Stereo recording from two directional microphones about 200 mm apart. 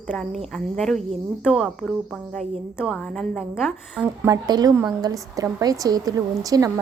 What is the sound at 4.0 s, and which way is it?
A woman's voice, 20° right (ahead or behind).